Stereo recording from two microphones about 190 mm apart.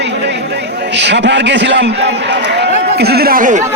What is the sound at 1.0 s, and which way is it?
A man's voice, 65° right (ahead or behind).